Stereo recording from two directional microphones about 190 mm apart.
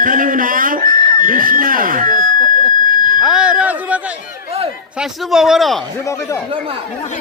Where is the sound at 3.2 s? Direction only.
5° right (ahead or behind).